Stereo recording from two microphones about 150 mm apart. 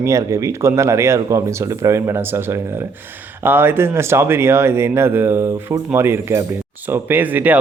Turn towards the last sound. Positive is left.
turn(degrees=-10)  # may be behind; listen again after turning